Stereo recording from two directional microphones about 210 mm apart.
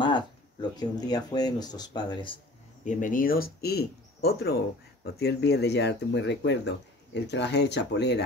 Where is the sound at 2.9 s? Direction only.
40° left (ahead or behind).